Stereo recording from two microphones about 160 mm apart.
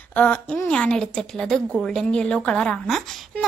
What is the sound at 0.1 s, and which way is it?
A woman's voice, 10° left (ahead or behind).